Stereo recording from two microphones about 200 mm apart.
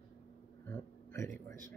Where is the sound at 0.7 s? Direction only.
15° left (ahead or behind).